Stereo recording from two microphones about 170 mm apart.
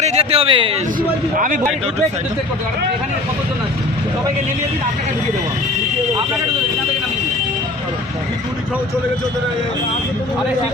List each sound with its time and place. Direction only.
0.0 s a man's voice: 40° right (ahead or behind)